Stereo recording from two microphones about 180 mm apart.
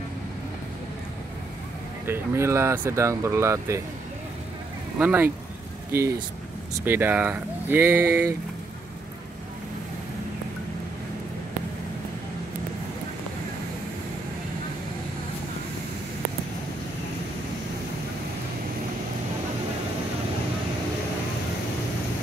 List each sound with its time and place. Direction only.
2.0 s speech: 15° right (ahead or behind)
4.9 s speech: 10° right (ahead or behind)